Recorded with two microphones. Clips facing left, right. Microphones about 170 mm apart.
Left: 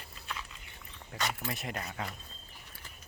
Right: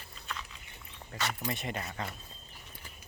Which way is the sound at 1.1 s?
Centre (ahead or behind).